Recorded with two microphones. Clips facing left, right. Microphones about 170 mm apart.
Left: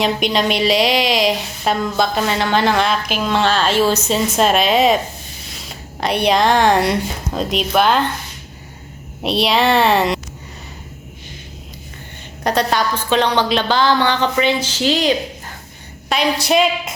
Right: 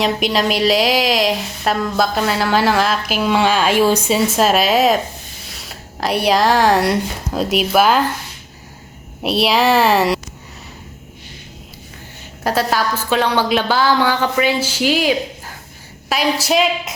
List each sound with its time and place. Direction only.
0.0 s a woman's voice: centre (ahead or behind)
9.2 s a woman's voice: centre (ahead or behind)
12.4 s a woman's voice: 5° right (ahead or behind)